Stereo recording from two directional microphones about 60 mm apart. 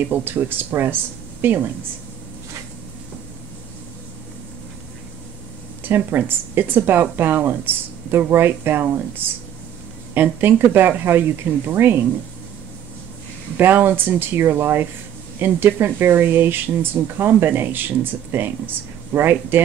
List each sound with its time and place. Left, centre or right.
0.1 s speech: right
5.9 s speech: right
13.6 s speech: right